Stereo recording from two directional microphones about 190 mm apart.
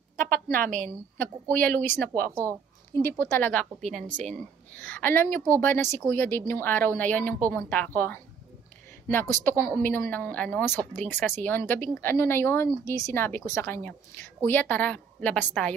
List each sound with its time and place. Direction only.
0.2 s a woman's voice: 45° right (ahead or behind)
1.1 s speech: 10° left (ahead or behind)
9.3 s speech: 10° left (ahead or behind)